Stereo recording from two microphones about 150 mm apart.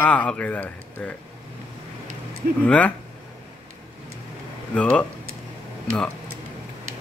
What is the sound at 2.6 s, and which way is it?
Speech, 10° left (ahead or behind).